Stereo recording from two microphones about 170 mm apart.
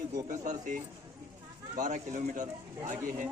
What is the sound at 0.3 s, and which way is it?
A man's voice, 50° right (ahead or behind).